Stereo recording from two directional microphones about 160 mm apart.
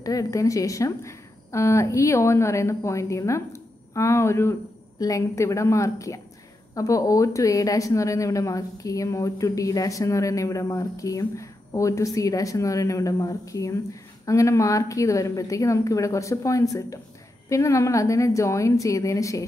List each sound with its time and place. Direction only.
0.0 s speech: 20° left (ahead or behind)